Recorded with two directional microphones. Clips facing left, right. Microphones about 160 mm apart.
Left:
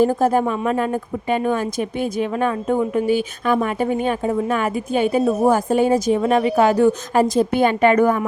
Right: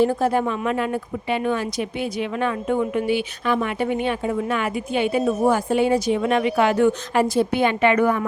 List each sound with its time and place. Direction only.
0.0 s speech: 45° left (ahead or behind)